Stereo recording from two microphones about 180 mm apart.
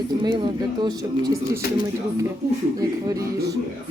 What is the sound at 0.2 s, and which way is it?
Speech, 25° right (ahead or behind).